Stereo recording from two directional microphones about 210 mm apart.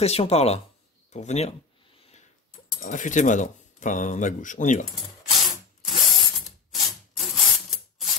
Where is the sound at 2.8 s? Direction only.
35° left (ahead or behind).